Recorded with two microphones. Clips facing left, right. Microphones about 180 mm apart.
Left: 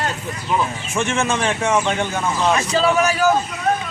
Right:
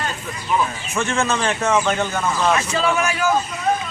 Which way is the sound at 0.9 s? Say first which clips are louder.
Left 1 dB; 15° left (ahead or behind).